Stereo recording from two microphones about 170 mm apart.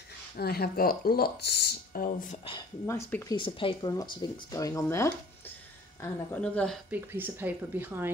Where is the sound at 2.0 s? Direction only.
35° left (ahead or behind).